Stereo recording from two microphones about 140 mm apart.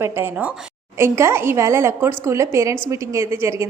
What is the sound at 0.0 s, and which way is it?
A woman's voice, 15° right (ahead or behind).